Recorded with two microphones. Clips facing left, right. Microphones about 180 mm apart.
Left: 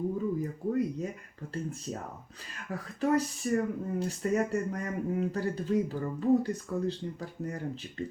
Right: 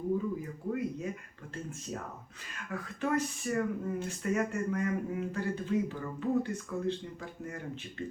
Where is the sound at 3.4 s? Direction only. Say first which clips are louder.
Left 2 dB; 35° left (ahead or behind).